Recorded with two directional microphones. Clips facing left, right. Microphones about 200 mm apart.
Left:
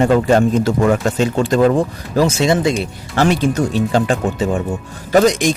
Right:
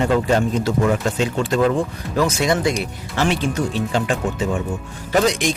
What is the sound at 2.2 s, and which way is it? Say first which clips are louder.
Speech: left 4 dB; 25° left (ahead or behind).